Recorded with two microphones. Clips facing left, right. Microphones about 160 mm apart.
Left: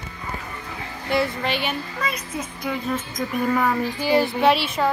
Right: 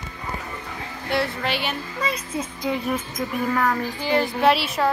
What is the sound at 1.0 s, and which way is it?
Child singing, centre (ahead or behind).